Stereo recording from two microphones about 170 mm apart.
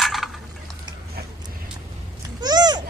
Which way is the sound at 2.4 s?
25° right (ahead or behind).